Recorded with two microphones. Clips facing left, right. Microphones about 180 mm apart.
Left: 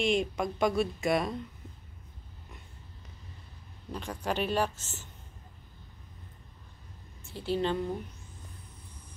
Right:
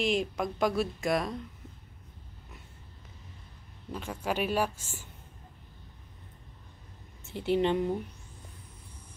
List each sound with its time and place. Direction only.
0.0 s speech: centre (ahead or behind)
3.9 s speech: 5° right (ahead or behind)
7.2 s a woman's voice: 20° right (ahead or behind)